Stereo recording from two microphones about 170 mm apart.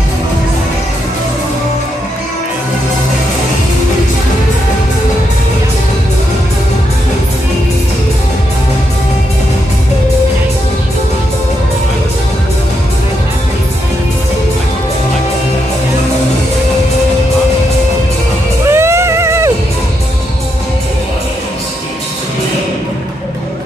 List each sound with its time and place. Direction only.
18.7 s music: 15° right (ahead or behind)